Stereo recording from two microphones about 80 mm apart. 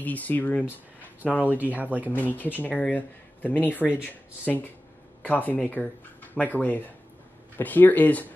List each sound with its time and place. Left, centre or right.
0.0 s speech: left
1.4 s speech: right
2.1 s speech: left